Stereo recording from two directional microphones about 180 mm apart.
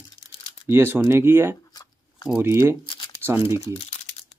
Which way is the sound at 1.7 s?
20° left (ahead or behind).